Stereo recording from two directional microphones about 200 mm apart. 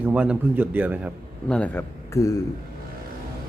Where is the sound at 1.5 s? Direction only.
10° left (ahead or behind).